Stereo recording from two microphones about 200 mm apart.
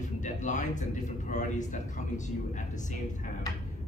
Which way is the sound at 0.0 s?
40° left (ahead or behind).